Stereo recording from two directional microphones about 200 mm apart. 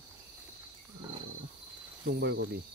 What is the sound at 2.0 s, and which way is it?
Cricket, 55° right (ahead or behind).